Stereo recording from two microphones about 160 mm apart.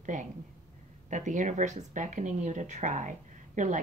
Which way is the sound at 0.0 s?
50° right (ahead or behind).